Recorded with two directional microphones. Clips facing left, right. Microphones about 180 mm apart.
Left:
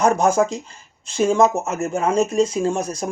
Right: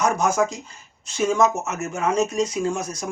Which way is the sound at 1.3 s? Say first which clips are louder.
Left 3 dB; 30° left (ahead or behind).